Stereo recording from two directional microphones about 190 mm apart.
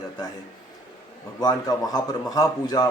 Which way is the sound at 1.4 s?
20° left (ahead or behind).